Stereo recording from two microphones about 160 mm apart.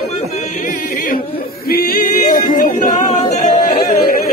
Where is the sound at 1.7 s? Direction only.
65° left (ahead or behind); by 3.7 s 45° left (ahead or behind).